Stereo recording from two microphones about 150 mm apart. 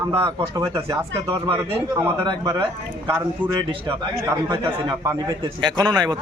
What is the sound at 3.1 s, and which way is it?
Speech, 15° right (ahead or behind).